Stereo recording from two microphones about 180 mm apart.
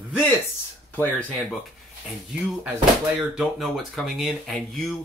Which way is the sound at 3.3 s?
5° right (ahead or behind).